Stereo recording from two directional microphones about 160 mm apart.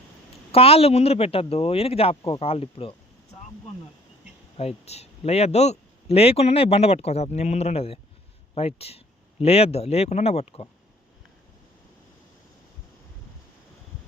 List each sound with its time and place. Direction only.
0.5 s a man's voice: 35° left (ahead or behind)
4.5 s a man's voice: 40° left (ahead or behind)